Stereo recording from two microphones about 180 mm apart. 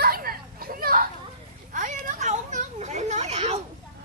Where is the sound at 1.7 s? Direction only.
45° right (ahead or behind).